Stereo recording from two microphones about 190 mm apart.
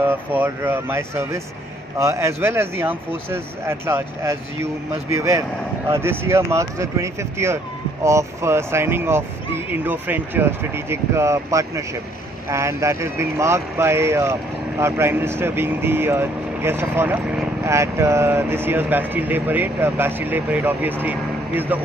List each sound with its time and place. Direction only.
0.0 s speech: 10° right (ahead or behind)